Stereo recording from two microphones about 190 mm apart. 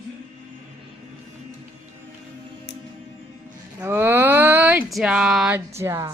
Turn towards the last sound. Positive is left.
turn(degrees=-15)  # may be behind; listen again after turning